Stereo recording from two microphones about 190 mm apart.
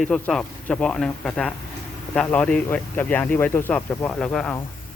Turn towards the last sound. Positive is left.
turn(degrees=5)  # may be behind; listen again after turning